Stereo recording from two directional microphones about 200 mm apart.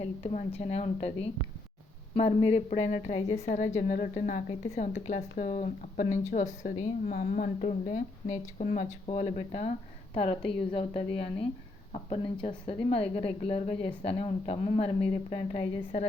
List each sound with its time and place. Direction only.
0.2 s a woman's voice: 30° left (ahead or behind)